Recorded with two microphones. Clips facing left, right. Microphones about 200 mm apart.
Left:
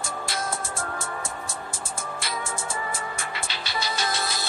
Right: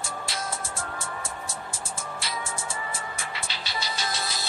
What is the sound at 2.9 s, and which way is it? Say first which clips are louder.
Music: left 3 dB; 50° left (ahead or behind).